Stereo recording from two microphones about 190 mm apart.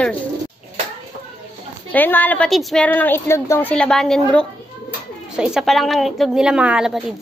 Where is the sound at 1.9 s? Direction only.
10° left (ahead or behind).